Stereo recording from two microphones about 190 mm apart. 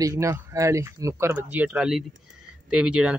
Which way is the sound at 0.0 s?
15° right (ahead or behind).